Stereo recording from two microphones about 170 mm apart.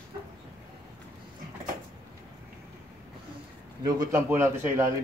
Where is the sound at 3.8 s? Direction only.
15° right (ahead or behind).